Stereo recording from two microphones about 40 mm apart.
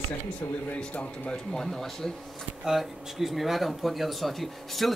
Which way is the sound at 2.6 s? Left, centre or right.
Centre.